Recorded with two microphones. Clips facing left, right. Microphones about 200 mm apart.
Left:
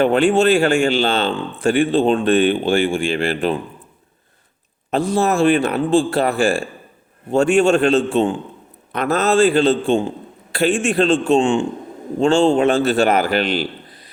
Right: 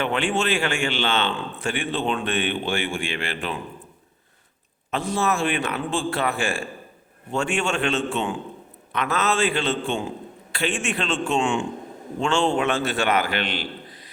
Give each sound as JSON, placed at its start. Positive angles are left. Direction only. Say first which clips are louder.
{"t": 0.0, "sound": "speech", "louder": "left 10 dB", "side_deg": 40}
{"t": 4.9, "sound": "speech", "louder": "left 7 dB", "side_deg": 35}